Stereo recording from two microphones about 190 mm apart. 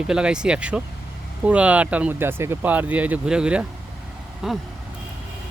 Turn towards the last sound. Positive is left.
turn(degrees=0)  # may be behind; listen again after turning